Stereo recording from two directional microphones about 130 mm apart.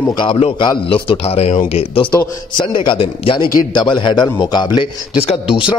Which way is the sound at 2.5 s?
40° left (ahead or behind).